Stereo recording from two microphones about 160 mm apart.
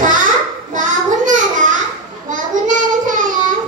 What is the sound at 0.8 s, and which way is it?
Child singing, 50° right (ahead or behind).